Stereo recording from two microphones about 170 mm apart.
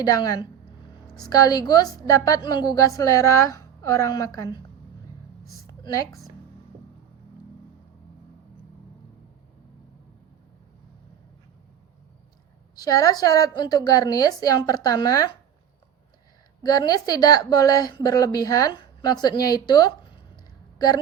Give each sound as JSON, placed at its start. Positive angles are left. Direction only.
{"t": 0.0, "sound": "a woman's voice", "side_deg": 20}
{"t": 5.6, "sound": "a sound", "side_deg": 20}
{"t": 12.7, "sound": "a woman's voice", "side_deg": 20}
{"t": 16.6, "sound": "a woman's voice", "side_deg": 25}